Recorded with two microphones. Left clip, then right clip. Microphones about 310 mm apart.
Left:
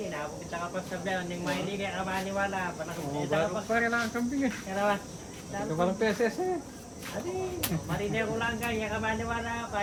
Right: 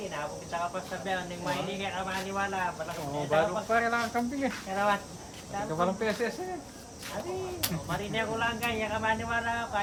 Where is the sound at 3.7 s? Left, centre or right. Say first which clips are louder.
Right 1 dB; centre.